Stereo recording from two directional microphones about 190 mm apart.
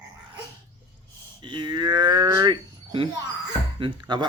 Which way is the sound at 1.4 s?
25° right (ahead or behind).